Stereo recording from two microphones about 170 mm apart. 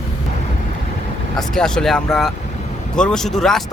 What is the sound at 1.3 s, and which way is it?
Speech, 5° left (ahead or behind).